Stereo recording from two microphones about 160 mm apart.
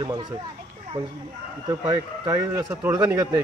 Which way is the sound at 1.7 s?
20° right (ahead or behind).